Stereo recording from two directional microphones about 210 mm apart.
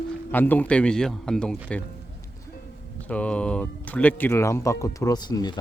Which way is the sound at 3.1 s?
5° left (ahead or behind).